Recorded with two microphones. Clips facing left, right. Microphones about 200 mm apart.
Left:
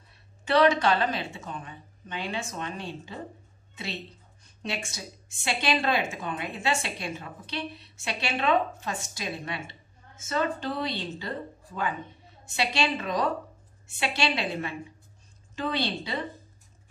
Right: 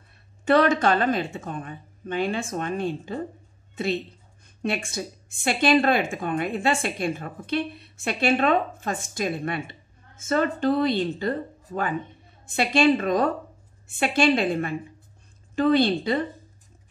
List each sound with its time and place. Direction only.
0.5 s speech: 50° right (ahead or behind)